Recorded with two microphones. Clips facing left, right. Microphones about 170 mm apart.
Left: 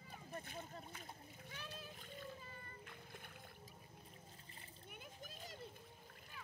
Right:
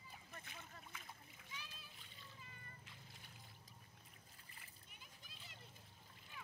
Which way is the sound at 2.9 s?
55° left (ahead or behind).